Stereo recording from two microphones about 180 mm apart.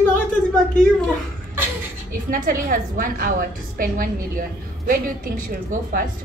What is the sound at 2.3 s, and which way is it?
A woman's voice, 50° right (ahead or behind).